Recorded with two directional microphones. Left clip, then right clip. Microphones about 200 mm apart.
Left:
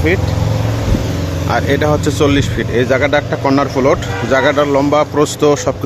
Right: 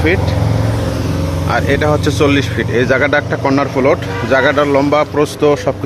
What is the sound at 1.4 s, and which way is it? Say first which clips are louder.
Speech: even; 15° left (ahead or behind).